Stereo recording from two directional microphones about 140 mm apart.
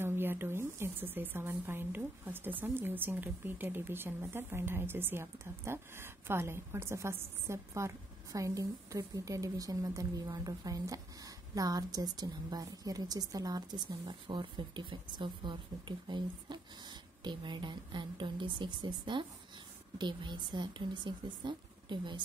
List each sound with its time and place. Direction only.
0.0 s a woman's voice: 15° right (ahead or behind); by 22.2 s 35° right (ahead or behind)